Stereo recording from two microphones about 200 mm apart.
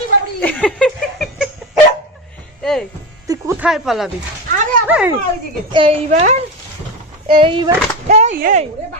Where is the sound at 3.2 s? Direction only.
10° right (ahead or behind).